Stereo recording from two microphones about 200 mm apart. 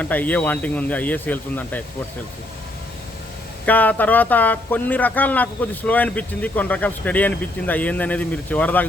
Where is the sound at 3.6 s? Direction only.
10° left (ahead or behind).